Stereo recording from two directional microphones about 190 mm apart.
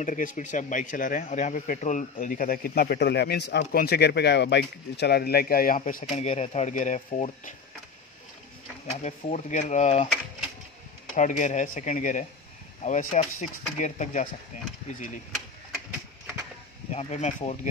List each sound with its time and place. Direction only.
0.0 s speech: 45° left (ahead or behind)
8.9 s speech: 40° left (ahead or behind)
11.1 s speech: 40° left (ahead or behind)
16.9 s speech: 35° left (ahead or behind)